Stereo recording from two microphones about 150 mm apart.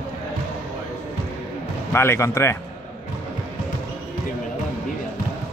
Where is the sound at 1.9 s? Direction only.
15° left (ahead or behind).